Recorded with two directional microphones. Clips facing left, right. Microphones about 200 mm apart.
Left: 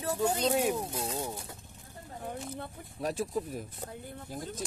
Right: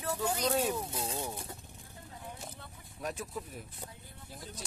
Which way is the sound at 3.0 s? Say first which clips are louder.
Left 7 dB; 30° left (ahead or behind).